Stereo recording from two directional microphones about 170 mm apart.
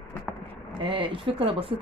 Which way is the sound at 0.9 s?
30° right (ahead or behind).